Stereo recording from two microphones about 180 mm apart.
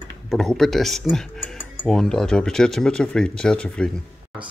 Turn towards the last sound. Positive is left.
turn(degrees=5)  # may be behind; listen again after turning